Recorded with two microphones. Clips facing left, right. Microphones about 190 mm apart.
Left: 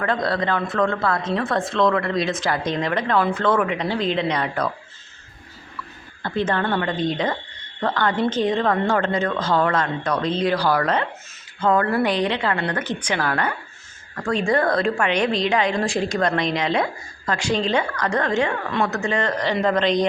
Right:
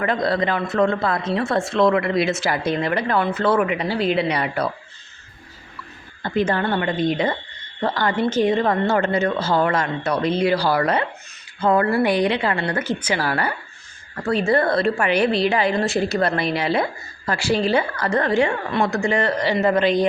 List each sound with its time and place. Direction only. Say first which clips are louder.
0.0 s a woman's voice: right 2 dB; 10° right (ahead or behind)
6.2 s a woman's voice: right 2 dB; 10° right (ahead or behind)